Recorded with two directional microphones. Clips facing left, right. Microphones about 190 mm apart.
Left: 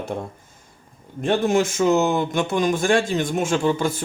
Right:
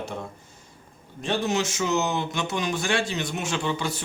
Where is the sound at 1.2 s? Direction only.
50° left (ahead or behind).